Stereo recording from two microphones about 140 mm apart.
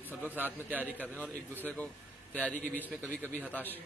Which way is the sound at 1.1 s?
10° left (ahead or behind).